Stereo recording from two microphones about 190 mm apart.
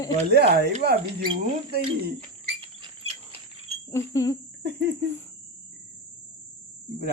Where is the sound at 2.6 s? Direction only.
30° right (ahead or behind).